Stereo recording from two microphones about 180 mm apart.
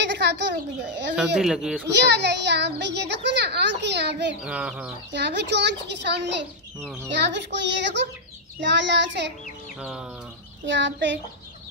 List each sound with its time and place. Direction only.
0.0 s bird: 70° right (ahead or behind)
1.1 s speech: 5° right (ahead or behind)
1.9 s a child's voice: 70° right (ahead or behind)
4.4 s speech: 5° right (ahead or behind)
5.1 s a child's voice: 70° right (ahead or behind)
9.8 s speech: 5° right (ahead or behind)
10.6 s a child's voice: 90° right